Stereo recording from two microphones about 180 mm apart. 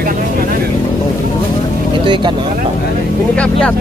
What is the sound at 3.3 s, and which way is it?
Speech, 5° left (ahead or behind).